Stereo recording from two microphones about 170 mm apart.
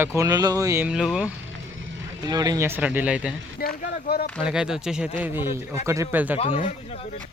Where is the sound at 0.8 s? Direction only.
5° right (ahead or behind).